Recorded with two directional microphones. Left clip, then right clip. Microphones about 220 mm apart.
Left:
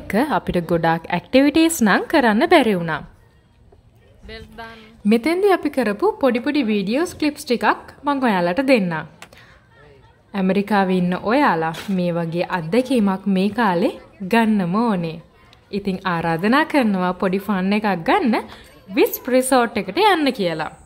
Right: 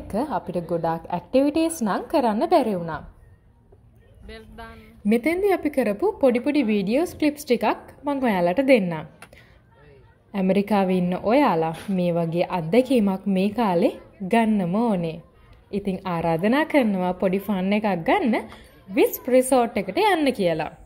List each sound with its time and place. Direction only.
0.1 s a woman's voice: 25° left (ahead or behind)
2.5 s a woman's voice: 55° left (ahead or behind)
4.3 s a woman's voice: 5° right (ahead or behind)
4.7 s a woman's voice: 15° left (ahead or behind)
10.3 s a woman's voice: 5° left (ahead or behind)